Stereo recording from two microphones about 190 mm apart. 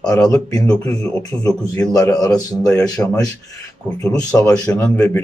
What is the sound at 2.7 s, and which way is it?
Speech, 5° left (ahead or behind).